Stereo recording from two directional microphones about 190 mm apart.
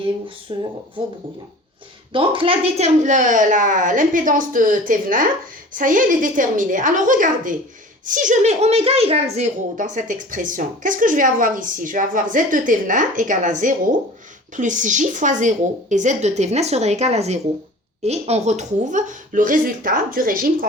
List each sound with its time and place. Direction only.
0.5 s speech: 25° right (ahead or behind)
2.1 s a child's voice: 30° right (ahead or behind); by 20.7 s 50° right (ahead or behind)